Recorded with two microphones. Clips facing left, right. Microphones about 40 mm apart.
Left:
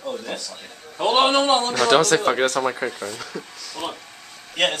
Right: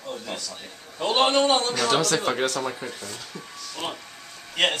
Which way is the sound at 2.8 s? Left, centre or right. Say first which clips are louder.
Left 8 dB; left.